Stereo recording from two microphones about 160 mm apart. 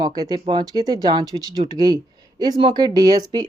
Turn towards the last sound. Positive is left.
turn(degrees=-25)  # may be behind; listen again after turning